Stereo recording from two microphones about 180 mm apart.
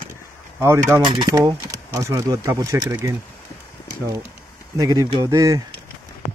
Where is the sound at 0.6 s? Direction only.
15° right (ahead or behind).